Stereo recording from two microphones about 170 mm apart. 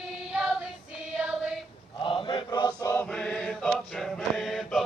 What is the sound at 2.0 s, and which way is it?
Mantra, 30° left (ahead or behind).